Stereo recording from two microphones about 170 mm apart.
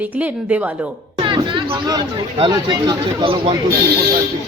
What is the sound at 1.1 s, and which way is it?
Speech, 30° right (ahead or behind).